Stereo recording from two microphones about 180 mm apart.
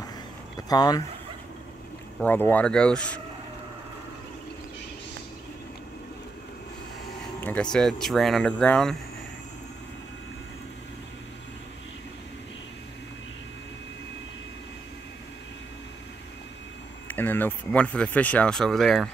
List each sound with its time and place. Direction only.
0.6 s speech: 20° left (ahead or behind)
2.1 s speech: 10° left (ahead or behind)
7.3 s a sound: 10° left (ahead or behind)
7.7 s speech: centre (ahead or behind)
17.1 s speech: 10° left (ahead or behind)